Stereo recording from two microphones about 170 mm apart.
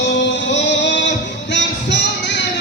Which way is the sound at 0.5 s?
90° left.